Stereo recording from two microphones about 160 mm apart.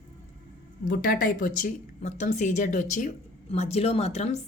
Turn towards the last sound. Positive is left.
turn(degrees=45)  # may be behind; listen again after turning